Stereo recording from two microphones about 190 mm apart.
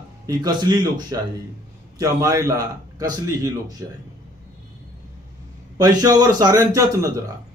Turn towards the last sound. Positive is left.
turn(degrees=-15)  # may be behind; listen again after turning